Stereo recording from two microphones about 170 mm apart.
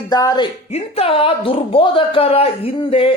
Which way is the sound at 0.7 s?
35° left (ahead or behind).